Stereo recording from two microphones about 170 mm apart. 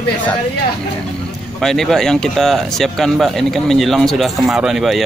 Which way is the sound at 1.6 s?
Centre (ahead or behind).